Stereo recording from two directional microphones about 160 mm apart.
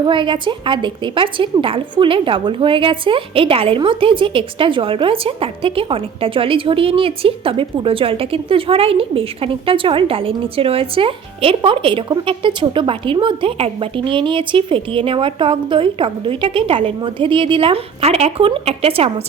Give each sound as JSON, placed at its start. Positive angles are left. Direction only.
{"t": 0.0, "sound": "a woman's voice", "side_deg": -30}